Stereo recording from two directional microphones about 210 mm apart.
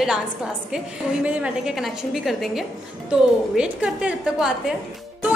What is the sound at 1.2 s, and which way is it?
A woman's voice, 5° right (ahead or behind).